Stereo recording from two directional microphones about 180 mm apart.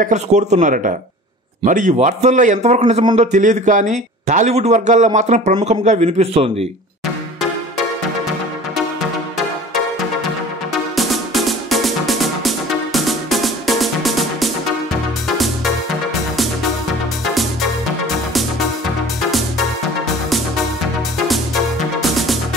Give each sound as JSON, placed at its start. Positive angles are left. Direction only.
{"t": 0.0, "sound": "a man's voice", "side_deg": -40}
{"t": 10.7, "sound": "music", "side_deg": 0}
{"t": 17.2, "sound": "music", "side_deg": 0}
{"t": 22.0, "sound": "music", "side_deg": 0}